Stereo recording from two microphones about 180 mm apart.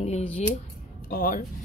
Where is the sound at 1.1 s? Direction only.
50° left (ahead or behind).